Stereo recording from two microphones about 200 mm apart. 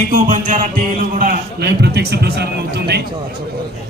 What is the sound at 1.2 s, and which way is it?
Speech, 50° right (ahead or behind).